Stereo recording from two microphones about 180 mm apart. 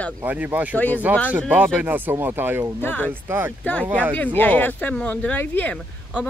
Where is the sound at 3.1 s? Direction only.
10° right (ahead or behind).